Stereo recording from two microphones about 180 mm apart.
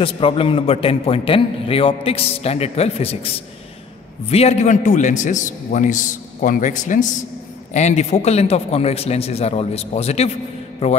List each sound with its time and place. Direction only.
0.0 s a man's voice: 30° left (ahead or behind)